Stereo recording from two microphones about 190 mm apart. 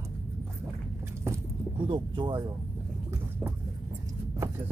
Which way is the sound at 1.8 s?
25° right (ahead or behind).